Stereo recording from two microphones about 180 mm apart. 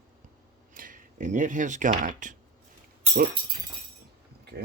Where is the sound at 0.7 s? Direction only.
50° right (ahead or behind).